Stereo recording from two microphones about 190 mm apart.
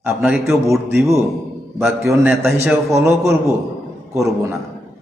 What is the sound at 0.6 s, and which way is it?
A man's voice, 15° right (ahead or behind).